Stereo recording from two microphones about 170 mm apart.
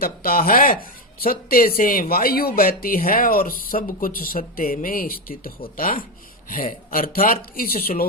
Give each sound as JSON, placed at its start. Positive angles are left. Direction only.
{"t": 0.0, "sound": "speech", "side_deg": 60}